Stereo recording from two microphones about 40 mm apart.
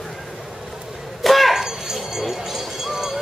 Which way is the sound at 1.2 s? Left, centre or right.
Centre.